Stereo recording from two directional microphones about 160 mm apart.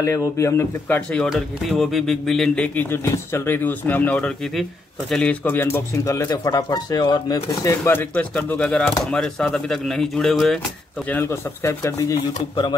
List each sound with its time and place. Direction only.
0.4 s speech: 15° left (ahead or behind); by 10.6 s centre (ahead or behind)
11.1 s speech: 15° left (ahead or behind)